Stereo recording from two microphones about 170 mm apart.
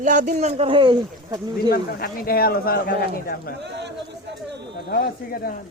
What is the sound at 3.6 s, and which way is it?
Speech, 90° right.